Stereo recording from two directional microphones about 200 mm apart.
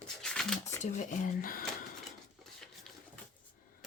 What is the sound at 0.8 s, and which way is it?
Speech, 35° left (ahead or behind).